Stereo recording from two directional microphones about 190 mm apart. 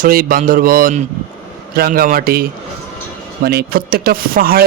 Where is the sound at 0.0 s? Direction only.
50° right (ahead or behind).